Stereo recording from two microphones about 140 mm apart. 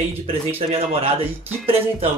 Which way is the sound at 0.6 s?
45° right (ahead or behind).